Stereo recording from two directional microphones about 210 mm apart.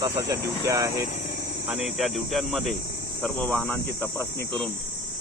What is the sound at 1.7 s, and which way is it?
Cricket, centre (ahead or behind).